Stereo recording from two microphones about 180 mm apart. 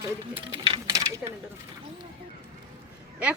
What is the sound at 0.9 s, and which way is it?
Coin, 15° right (ahead or behind).